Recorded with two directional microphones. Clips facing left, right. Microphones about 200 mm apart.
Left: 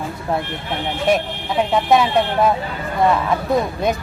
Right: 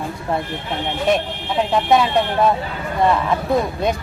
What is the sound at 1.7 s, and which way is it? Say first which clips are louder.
Speech: even; 5° left (ahead or behind).